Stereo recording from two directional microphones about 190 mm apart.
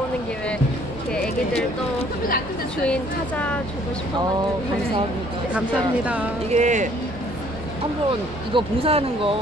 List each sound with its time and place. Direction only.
2.9 s speech: 5° left (ahead or behind)
6.5 s speech: 40° right (ahead or behind)
8.5 s speech: 30° right (ahead or behind)